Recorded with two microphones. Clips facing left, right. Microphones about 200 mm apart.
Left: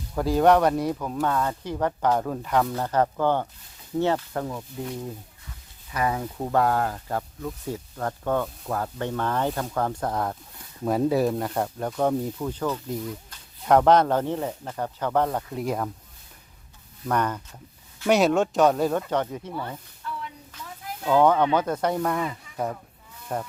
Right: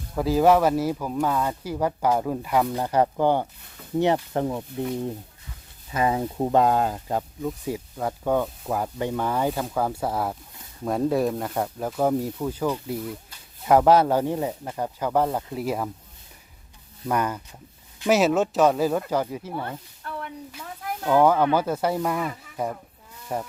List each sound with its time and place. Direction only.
0.2 s speech: centre (ahead or behind); by 4.6 s 20° right (ahead or behind)
5.9 s speech: 25° right (ahead or behind); by 15.9 s 5° right (ahead or behind)
17.1 s speech: 10° right (ahead or behind)
19.6 s snake: 55° right (ahead or behind)
21.0 s speech: 5° right (ahead or behind)